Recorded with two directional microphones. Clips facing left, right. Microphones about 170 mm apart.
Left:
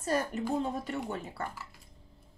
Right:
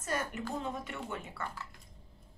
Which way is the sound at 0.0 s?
35° left (ahead or behind).